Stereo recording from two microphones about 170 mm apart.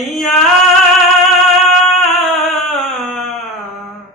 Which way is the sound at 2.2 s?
Centre (ahead or behind).